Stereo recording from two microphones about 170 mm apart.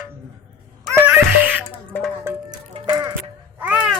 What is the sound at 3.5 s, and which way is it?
Babbling, 10° right (ahead or behind).